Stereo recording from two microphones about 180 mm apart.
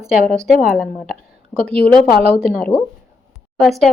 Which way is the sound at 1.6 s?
5° left (ahead or behind).